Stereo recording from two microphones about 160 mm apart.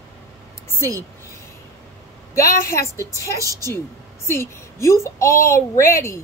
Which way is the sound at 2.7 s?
20° left (ahead or behind).